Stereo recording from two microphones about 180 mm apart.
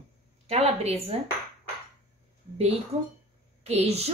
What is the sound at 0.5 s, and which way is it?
Speech, 35° right (ahead or behind).